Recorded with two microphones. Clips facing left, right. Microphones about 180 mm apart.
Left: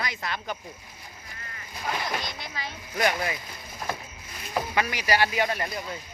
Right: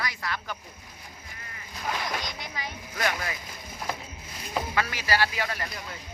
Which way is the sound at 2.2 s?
15° right (ahead or behind).